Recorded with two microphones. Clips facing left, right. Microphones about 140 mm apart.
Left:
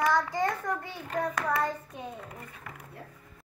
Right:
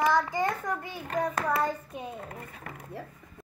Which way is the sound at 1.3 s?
30° right (ahead or behind).